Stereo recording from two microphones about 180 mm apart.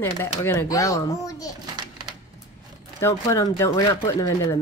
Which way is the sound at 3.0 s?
15° left (ahead or behind).